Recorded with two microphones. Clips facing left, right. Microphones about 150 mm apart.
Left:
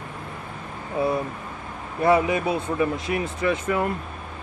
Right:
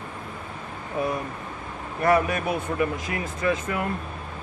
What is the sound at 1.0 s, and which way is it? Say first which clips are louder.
Speech: left 3 dB; 25° left (ahead or behind).